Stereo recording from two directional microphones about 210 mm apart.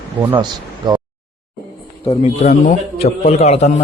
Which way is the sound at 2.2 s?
35° left (ahead or behind).